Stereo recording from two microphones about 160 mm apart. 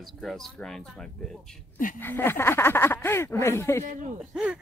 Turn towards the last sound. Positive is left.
turn(degrees=-5)  # may be behind; listen again after turning